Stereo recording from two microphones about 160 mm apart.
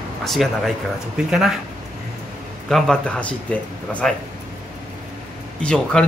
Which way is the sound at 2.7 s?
5° left (ahead or behind).